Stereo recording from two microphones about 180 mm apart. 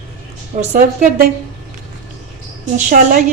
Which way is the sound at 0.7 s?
40° right (ahead or behind).